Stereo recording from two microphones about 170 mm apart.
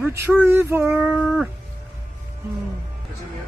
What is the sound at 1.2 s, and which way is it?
Cat, centre (ahead or behind).